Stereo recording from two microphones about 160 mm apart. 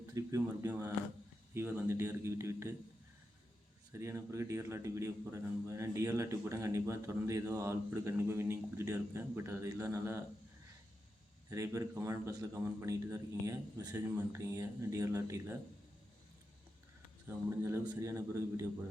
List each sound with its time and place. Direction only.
0.1 s a man's voice: 20° right (ahead or behind)
3.9 s a man's voice: 15° right (ahead or behind)
11.4 s a man's voice: 20° right (ahead or behind)
17.2 s a man's voice: 15° right (ahead or behind)